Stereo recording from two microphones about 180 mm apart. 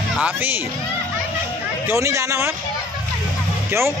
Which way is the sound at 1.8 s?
15° right (ahead or behind).